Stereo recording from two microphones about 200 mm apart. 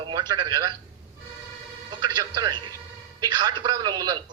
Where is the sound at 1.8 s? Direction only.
20° right (ahead or behind).